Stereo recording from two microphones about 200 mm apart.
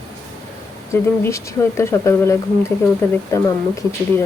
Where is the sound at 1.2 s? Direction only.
15° left (ahead or behind).